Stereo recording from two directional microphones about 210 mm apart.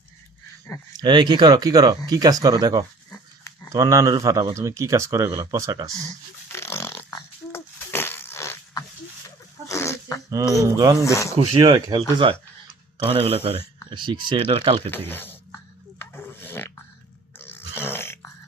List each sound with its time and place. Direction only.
0.9 s speech: 20° right (ahead or behind)
3.1 s dog: 15° left (ahead or behind)
3.7 s a man's voice: 15° right (ahead or behind)
6.1 s snort: 10° left (ahead or behind)
9.6 s a sound: 15° left (ahead or behind)
10.5 s a man's voice: 15° right (ahead or behind)
11.0 s speech: 15° left (ahead or behind)
11.3 s speech: 25° right (ahead or behind)
13.1 s speech: 25° right (ahead or behind)
14.8 s a sound: 10° left (ahead or behind)